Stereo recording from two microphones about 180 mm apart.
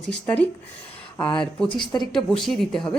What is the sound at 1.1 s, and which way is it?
Speech, 25° left (ahead or behind).